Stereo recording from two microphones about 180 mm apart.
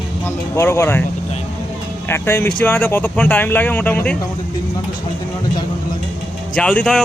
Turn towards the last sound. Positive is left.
turn(degrees=5)  # may be behind; listen again after turning